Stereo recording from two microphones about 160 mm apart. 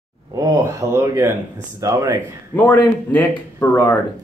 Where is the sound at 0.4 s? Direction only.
20° right (ahead or behind).